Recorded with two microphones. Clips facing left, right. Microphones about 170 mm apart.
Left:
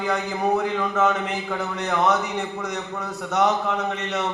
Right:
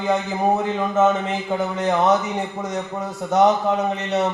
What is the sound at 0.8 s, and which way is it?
A man's voice, 25° right (ahead or behind).